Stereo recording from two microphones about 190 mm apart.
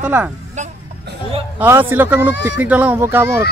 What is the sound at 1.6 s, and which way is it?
Speech, 10° right (ahead or behind).